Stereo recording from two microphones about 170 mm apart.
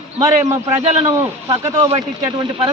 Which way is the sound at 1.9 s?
35° right (ahead or behind).